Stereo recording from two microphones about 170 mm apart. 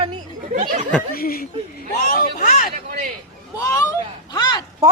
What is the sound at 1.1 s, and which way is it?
A man's voice, 60° left (ahead or behind).